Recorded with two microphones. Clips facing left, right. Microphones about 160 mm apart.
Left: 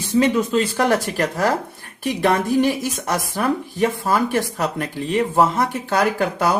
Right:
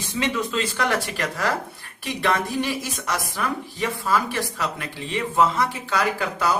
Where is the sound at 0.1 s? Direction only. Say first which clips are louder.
Left 8 dB; 40° left (ahead or behind).